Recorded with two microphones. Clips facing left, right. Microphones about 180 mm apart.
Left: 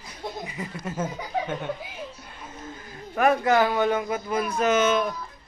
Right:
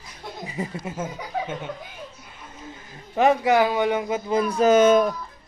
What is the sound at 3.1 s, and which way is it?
A man's voice, 20° right (ahead or behind).